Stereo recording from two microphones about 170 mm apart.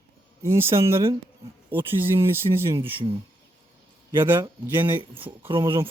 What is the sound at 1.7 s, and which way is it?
Speech, 10° right (ahead or behind).